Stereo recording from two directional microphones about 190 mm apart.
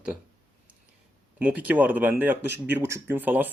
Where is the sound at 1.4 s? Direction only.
10° right (ahead or behind).